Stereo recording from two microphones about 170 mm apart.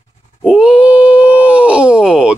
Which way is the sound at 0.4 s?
5° right (ahead or behind).